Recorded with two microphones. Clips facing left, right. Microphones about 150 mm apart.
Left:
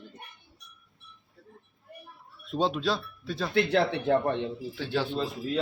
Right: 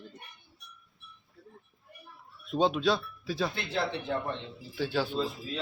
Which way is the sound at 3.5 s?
65° left (ahead or behind).